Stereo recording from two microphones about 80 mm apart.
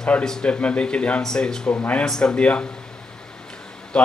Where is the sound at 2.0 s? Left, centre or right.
Centre.